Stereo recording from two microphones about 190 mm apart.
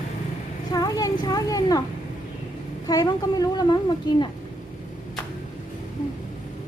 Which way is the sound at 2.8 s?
20° left (ahead or behind).